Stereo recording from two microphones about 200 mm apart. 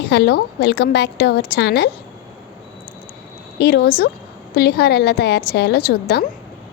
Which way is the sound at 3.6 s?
50° left (ahead or behind).